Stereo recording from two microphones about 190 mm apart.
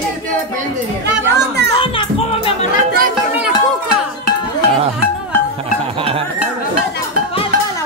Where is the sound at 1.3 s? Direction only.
60° right (ahead or behind).